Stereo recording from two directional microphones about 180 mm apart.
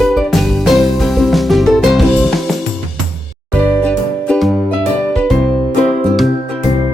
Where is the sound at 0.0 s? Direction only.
Centre (ahead or behind).